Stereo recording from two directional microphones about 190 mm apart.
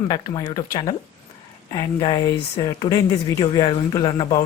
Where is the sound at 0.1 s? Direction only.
20° left (ahead or behind).